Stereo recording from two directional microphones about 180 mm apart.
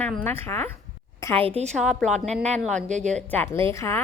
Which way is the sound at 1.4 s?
35° right (ahead or behind).